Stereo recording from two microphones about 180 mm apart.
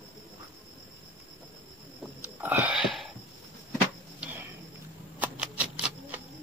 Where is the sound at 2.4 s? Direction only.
10° right (ahead or behind).